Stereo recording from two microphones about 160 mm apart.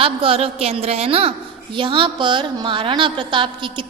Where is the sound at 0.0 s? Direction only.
35° right (ahead or behind).